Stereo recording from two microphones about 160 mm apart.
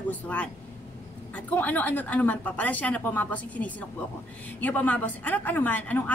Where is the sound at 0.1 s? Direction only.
10° left (ahead or behind).